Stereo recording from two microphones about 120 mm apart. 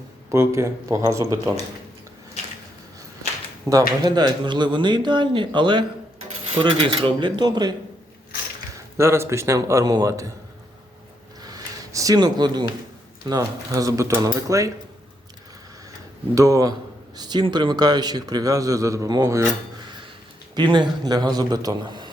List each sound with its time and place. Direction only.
0.3 s speech: 25° right (ahead or behind)
3.7 s speech: 30° right (ahead or behind)
9.0 s speech: 20° right (ahead or behind)
11.4 s a sound: 30° right (ahead or behind)
13.2 s speech: 30° right (ahead or behind)
16.3 s speech: 30° right (ahead or behind)
20.6 s speech: 40° right (ahead or behind)